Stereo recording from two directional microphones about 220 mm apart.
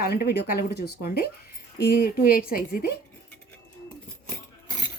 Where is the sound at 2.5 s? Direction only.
40° left (ahead or behind).